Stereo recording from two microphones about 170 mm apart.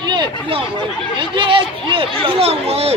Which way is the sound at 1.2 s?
30° right (ahead or behind).